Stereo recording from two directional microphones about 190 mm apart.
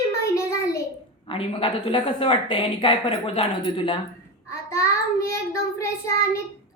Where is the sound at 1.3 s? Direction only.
30° left (ahead or behind).